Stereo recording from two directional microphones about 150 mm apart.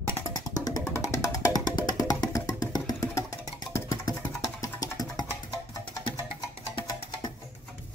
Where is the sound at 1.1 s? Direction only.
20° left (ahead or behind).